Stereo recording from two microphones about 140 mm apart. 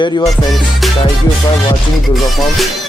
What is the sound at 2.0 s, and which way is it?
Music, centre (ahead or behind).